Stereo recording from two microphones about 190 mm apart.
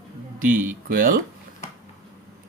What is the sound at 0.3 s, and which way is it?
Speech, 45° right (ahead or behind).